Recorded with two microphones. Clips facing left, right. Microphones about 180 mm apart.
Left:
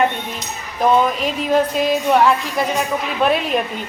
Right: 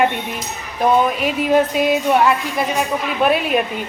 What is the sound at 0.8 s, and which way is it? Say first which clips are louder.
Speech: even; 5° right (ahead or behind).